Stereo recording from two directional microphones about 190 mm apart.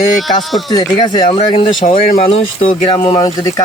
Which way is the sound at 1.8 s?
45° left (ahead or behind).